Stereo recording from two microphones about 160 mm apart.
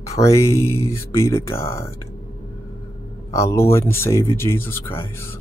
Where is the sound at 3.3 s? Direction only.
20° left (ahead or behind).